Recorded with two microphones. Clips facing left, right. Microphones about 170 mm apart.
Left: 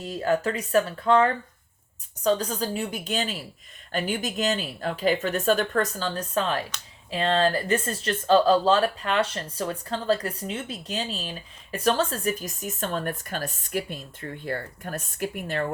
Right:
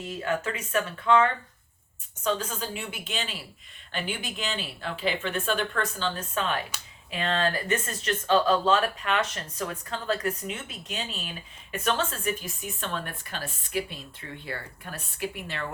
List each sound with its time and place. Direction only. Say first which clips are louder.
0.0 s speech: left 5 dB; 35° left (ahead or behind)